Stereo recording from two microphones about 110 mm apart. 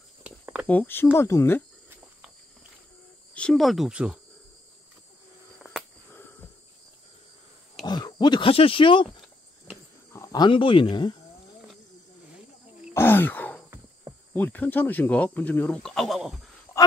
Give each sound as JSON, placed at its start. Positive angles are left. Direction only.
{"t": 0.2, "sound": "a sound", "side_deg": -10}
{"t": 0.7, "sound": "speech", "side_deg": 15}
{"t": 3.3, "sound": "speech", "side_deg": 5}
{"t": 5.6, "sound": "cricket", "side_deg": -5}
{"t": 7.8, "sound": "speech", "side_deg": 40}
{"t": 10.1, "sound": "cricket", "side_deg": 30}
{"t": 10.4, "sound": "speech", "side_deg": 55}
{"t": 12.9, "sound": "a sound", "side_deg": 20}
{"t": 14.3, "sound": "speech", "side_deg": 15}
{"t": 15.8, "sound": "speech", "side_deg": 5}